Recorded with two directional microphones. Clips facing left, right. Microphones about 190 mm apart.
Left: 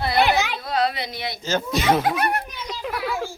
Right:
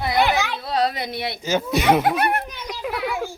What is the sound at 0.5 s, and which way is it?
Dog, 30° right (ahead or behind).